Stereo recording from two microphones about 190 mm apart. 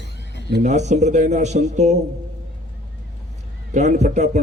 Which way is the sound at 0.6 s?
40° right (ahead or behind).